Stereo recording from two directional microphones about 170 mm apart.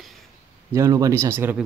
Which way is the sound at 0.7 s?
20° right (ahead or behind).